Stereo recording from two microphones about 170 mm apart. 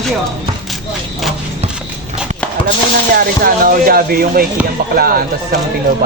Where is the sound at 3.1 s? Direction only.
60° right (ahead or behind).